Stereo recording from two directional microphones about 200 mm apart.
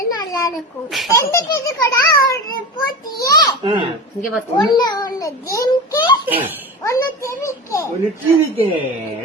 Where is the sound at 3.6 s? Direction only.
25° right (ahead or behind).